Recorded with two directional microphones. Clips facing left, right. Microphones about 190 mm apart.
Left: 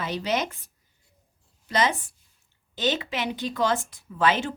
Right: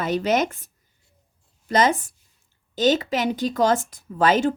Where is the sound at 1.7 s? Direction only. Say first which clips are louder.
Right 5 dB; 45° right (ahead or behind).